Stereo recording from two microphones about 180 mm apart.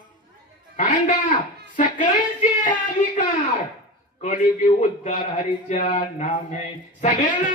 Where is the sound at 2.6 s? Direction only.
45° left (ahead or behind).